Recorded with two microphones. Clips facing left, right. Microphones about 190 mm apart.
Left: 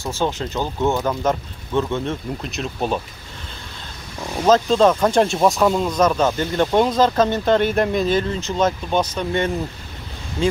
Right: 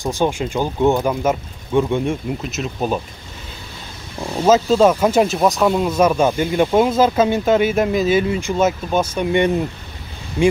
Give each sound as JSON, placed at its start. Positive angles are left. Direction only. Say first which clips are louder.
{"t": 0.0, "sound": "speech", "louder": "right 4 dB", "side_deg": -15}
{"t": 2.4, "sound": "speech", "louder": "right 2 dB", "side_deg": -5}
{"t": 4.4, "sound": "speech", "louder": "right 2 dB", "side_deg": -5}